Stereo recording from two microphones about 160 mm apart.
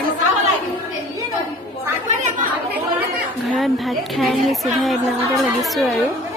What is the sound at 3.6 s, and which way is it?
A woman's voice, centre (ahead or behind).